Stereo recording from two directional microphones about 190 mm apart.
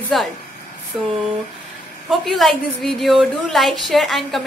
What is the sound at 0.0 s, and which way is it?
A woman's voice, centre (ahead or behind).